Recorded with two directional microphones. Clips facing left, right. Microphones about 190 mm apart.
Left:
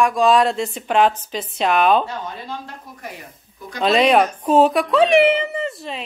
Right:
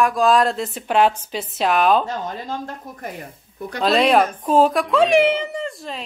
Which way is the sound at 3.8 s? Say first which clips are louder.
Left 1 dB; centre (ahead or behind).